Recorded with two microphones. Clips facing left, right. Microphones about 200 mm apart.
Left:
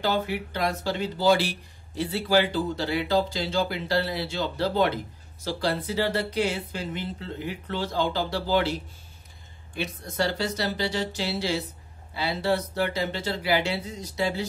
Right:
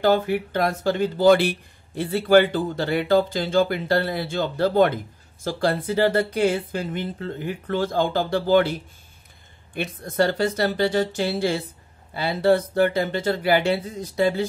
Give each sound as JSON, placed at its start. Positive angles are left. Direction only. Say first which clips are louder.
{"t": 0.0, "sound": "speech", "louder": "right 7 dB", "side_deg": -50}